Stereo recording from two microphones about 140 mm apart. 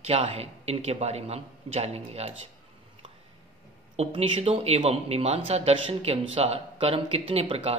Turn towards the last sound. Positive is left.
turn(degrees=-45)  # may be behind; listen again after turning